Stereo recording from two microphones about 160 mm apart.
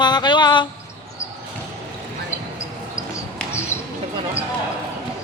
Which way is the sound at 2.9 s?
15° left (ahead or behind).